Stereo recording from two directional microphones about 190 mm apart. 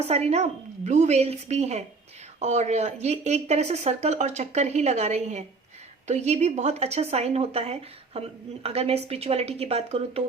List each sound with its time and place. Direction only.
0.0 s speech: 35° right (ahead or behind)